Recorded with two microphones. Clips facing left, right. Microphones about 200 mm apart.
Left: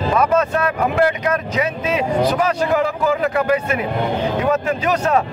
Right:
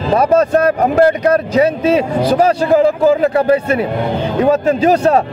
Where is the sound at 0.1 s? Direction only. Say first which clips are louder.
Right 7 dB; 35° right (ahead or behind).